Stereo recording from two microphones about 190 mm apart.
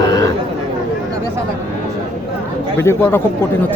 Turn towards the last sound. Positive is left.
turn(degrees=15)  # may be behind; listen again after turning